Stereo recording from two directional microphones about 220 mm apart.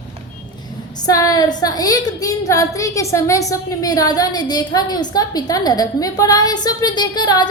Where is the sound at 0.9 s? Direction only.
15° left (ahead or behind).